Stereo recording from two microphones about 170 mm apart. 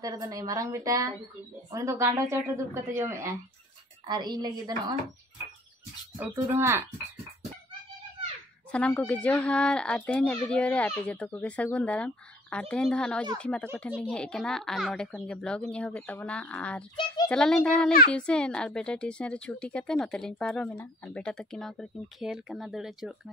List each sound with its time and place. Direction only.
0.0 s a woman's voice: 20° right (ahead or behind)
6.5 s a woman's voice: 15° right (ahead or behind)
8.7 s a child's voice: 5° left (ahead or behind)